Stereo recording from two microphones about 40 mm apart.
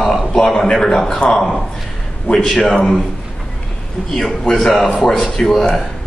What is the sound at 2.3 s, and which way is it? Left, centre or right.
Speech, centre.